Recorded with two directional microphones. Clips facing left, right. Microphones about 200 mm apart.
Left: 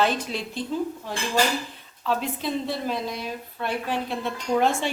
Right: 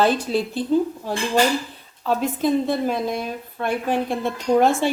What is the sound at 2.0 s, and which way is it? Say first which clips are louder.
A woman's voice: right 6 dB; 45° right (ahead or behind).